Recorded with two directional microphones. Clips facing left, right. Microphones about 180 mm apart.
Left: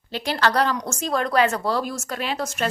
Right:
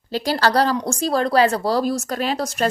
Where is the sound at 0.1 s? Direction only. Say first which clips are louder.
Right 3 dB; 35° right (ahead or behind).